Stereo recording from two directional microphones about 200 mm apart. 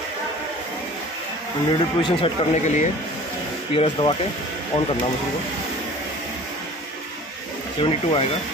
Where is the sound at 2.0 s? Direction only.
30° left (ahead or behind).